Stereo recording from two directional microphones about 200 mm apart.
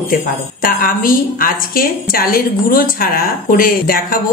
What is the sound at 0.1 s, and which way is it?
A woman's voice, 45° left (ahead or behind).